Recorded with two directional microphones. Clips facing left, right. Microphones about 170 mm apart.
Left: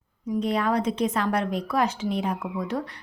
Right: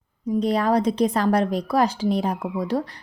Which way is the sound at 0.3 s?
35° right (ahead or behind).